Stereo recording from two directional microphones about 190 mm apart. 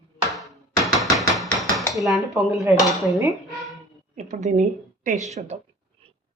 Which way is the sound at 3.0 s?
15° right (ahead or behind).